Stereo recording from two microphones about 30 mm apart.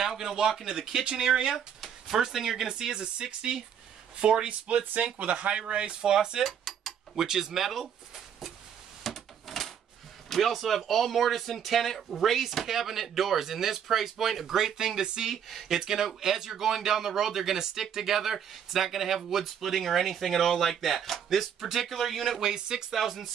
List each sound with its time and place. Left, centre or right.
0.5 s speech: centre; by 1.6 s right
2.0 s speech: centre
2.9 s speech: right
5.2 s speech: right
5.7 s speech: right
6.4 s dishes: centre
7.2 s speech: centre
9.0 s a sound: centre
10.3 s speech: centre
21.5 s speech: centre
22.4 s speech: right
22.9 s speech: centre